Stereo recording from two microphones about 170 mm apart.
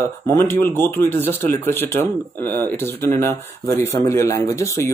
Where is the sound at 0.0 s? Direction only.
15° left (ahead or behind).